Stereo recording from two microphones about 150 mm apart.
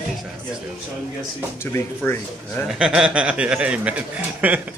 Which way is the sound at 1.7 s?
15° left (ahead or behind).